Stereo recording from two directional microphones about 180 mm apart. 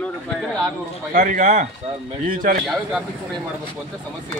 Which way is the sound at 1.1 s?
45° right (ahead or behind).